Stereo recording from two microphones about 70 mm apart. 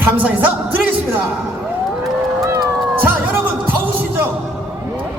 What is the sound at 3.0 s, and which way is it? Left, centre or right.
Music, right.